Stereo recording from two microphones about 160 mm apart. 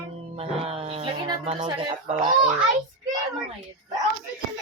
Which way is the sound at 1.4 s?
45° right (ahead or behind).